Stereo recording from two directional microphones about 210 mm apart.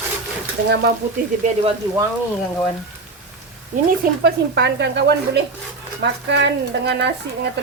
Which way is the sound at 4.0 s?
50° right (ahead or behind).